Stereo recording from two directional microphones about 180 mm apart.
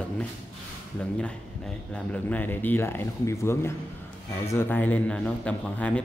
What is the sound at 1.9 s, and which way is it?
A man's voice, 10° left (ahead or behind).